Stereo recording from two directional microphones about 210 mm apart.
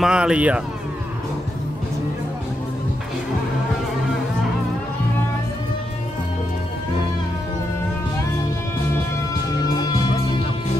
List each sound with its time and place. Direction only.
0.0 s speech: 5° right (ahead or behind)